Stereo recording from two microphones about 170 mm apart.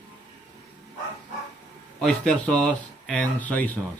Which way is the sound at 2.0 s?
5° left (ahead or behind).